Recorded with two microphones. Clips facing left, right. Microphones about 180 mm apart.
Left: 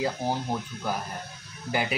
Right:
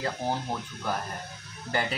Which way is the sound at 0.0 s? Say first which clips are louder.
Left 2 dB; 10° left (ahead or behind).